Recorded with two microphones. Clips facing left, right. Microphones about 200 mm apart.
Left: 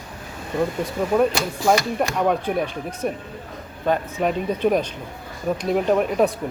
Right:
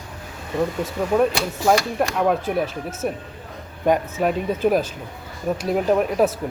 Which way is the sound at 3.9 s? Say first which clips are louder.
Right 3 dB; 15° right (ahead or behind).